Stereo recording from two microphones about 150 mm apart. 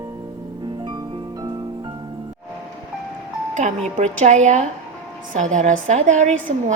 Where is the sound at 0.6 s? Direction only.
30° right (ahead or behind).